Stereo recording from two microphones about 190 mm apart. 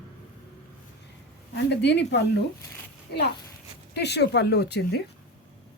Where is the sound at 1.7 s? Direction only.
65° left (ahead or behind).